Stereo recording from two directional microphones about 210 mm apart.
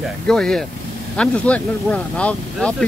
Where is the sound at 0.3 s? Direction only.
5° left (ahead or behind).